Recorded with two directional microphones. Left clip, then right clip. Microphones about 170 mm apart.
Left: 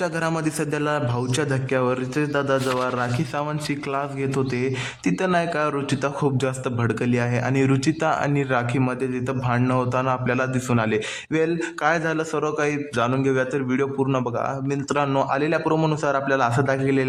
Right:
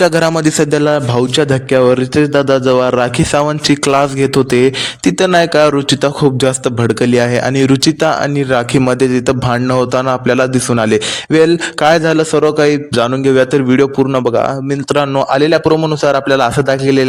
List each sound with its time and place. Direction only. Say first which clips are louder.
0.0 s a man's voice: right 14 dB; 40° right (ahead or behind)